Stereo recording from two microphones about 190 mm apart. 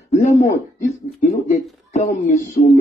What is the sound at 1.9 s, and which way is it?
Speech, 40° left (ahead or behind).